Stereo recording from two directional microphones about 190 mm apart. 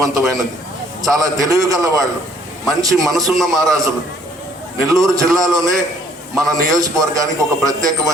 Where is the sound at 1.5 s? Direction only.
20° right (ahead or behind).